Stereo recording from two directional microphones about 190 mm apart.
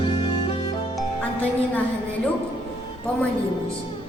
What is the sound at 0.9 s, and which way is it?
Music, 10° left (ahead or behind).